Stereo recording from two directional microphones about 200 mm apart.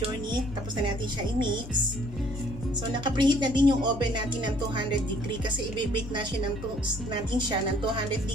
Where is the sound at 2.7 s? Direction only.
20° right (ahead or behind).